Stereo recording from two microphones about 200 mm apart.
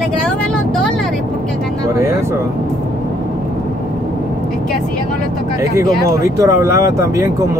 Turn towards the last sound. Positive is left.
turn(degrees=-15)  # may be behind; listen again after turning